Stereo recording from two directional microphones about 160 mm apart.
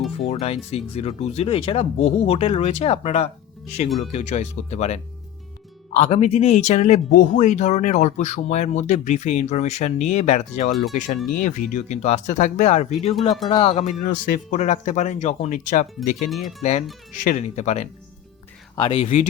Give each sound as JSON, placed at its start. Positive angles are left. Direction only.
{"t": 0.3, "sound": "speech", "side_deg": 40}
{"t": 14.0, "sound": "speech", "side_deg": 60}
{"t": 16.3, "sound": "speech", "side_deg": 0}
{"t": 17.1, "sound": "speech", "side_deg": 45}
{"t": 18.8, "sound": "speech", "side_deg": 30}